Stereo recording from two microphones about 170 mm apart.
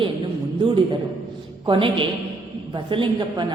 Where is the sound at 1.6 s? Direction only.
30° right (ahead or behind).